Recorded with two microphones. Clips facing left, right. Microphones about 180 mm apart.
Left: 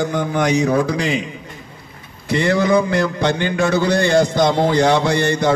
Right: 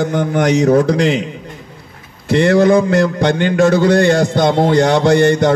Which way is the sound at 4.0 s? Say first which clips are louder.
Right 2 dB; 55° right (ahead or behind).